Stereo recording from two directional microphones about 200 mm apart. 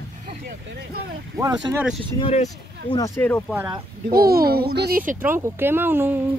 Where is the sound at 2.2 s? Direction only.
30° left (ahead or behind).